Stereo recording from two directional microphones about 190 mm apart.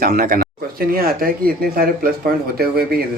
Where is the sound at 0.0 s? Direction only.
50° right (ahead or behind).